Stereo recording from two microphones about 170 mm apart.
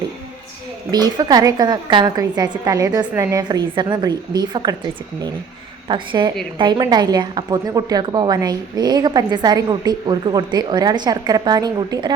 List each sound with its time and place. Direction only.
0.9 s a woman's voice: 25° right (ahead or behind)
5.9 s a woman's voice: 25° right (ahead or behind)